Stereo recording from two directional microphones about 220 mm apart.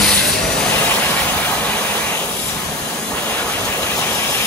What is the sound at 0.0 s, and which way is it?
Vehicle, 5° left (ahead or behind).